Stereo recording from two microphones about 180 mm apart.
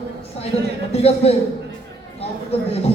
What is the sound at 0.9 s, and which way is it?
Speech, 35° left (ahead or behind).